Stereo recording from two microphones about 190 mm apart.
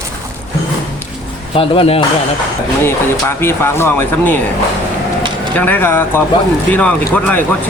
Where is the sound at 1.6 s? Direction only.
30° left (ahead or behind).